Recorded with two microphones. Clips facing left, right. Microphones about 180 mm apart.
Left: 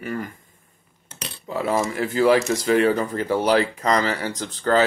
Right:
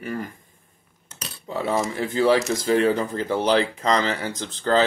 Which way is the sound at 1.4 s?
30° right (ahead or behind).